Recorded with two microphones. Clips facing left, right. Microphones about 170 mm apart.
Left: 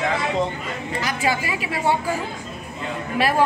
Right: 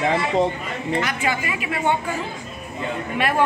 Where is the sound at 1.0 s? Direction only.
35° left (ahead or behind).